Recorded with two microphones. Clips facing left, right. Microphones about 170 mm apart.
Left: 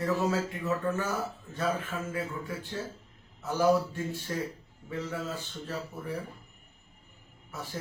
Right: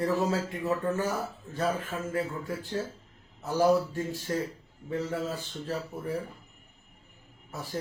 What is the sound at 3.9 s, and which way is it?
Speech, 45° right (ahead or behind).